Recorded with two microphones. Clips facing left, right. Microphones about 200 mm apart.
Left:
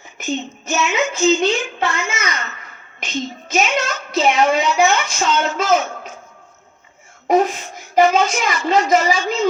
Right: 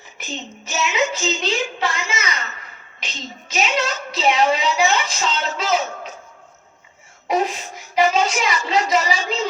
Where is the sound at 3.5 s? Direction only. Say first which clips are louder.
Left 2 dB; 55° left (ahead or behind).